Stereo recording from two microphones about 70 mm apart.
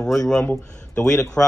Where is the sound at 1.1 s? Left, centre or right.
Left.